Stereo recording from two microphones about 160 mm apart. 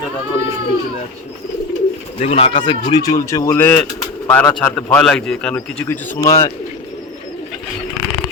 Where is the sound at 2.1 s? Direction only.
40° left (ahead or behind); by 6.0 s 10° left (ahead or behind).